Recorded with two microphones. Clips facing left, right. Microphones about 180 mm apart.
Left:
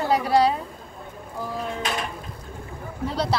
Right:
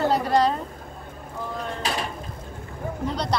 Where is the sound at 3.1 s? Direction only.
5° left (ahead or behind).